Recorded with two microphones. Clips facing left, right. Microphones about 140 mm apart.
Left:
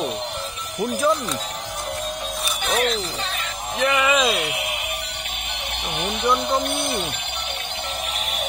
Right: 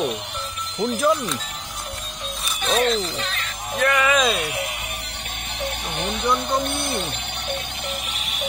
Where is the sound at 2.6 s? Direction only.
Centre (ahead or behind).